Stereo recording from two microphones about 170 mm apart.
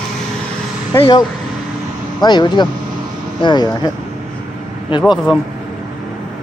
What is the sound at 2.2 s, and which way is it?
Speech, 25° left (ahead or behind).